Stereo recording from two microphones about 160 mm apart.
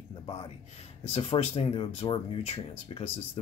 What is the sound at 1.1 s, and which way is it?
Speech, 40° left (ahead or behind).